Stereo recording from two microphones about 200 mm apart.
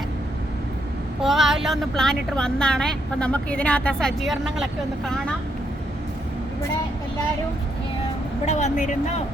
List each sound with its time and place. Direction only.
1.2 s a woman's voice: centre (ahead or behind)
8.4 s speech: 35° left (ahead or behind)